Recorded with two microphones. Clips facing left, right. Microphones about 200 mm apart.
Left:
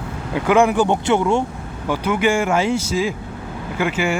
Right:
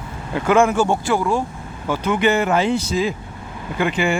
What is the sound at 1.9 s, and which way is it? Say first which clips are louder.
Speech: even; 10° left (ahead or behind).